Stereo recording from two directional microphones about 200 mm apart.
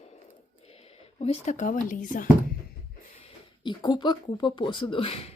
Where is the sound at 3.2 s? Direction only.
20° left (ahead or behind).